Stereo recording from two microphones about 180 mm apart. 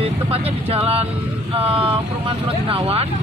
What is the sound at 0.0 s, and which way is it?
Vehicle, 35° right (ahead or behind).